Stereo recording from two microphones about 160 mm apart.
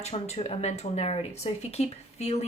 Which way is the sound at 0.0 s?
40° left (ahead or behind).